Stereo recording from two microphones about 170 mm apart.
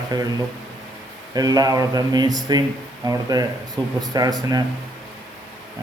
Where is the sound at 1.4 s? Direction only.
20° right (ahead or behind).